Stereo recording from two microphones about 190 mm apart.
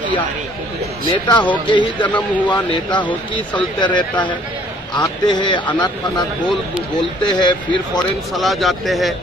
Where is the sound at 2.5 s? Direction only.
25° left (ahead or behind).